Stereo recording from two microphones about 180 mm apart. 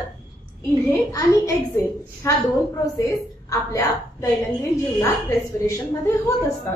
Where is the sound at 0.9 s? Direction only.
20° left (ahead or behind).